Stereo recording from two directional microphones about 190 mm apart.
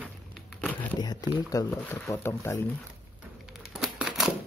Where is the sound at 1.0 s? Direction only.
20° left (ahead or behind).